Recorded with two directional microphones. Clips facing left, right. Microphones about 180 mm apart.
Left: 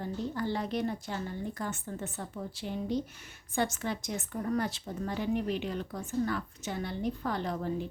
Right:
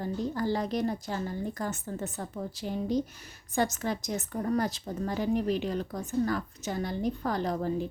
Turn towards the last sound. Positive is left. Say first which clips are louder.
# right 4 dB
turn(degrees=-40)  # may be behind; listen again after turning